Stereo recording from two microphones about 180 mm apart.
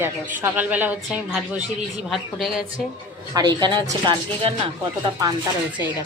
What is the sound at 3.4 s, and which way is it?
Speech, 25° right (ahead or behind).